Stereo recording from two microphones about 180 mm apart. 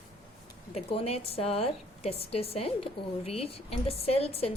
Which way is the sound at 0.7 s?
35° left (ahead or behind).